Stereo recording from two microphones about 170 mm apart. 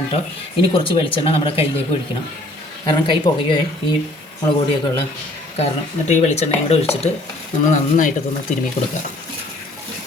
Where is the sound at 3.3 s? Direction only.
25° left (ahead or behind).